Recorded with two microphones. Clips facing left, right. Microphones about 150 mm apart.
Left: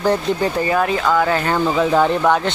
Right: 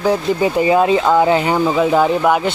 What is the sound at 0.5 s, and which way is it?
Speech, 20° right (ahead or behind).